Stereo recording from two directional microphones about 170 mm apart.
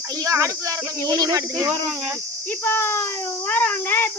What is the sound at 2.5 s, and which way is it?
Speech, 15° left (ahead or behind).